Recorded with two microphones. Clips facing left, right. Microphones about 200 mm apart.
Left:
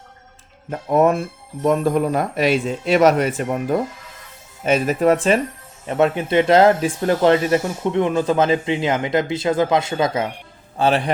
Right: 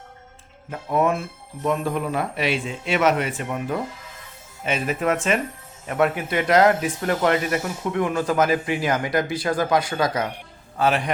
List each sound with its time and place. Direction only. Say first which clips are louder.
0.7 s a man's voice: left 5 dB; 40° left (ahead or behind)